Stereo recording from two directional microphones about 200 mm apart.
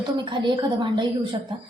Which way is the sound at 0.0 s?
25° right (ahead or behind).